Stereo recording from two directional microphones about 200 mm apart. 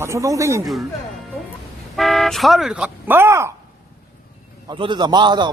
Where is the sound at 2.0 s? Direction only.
Centre (ahead or behind).